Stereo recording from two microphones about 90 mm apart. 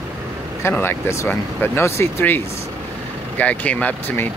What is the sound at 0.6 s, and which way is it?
Speech, 25° left (ahead or behind).